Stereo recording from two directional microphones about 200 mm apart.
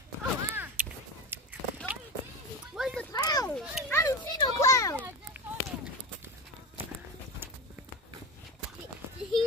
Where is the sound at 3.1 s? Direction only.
20° left (ahead or behind).